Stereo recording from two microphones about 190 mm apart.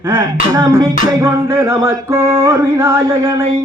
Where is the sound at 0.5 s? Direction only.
20° right (ahead or behind).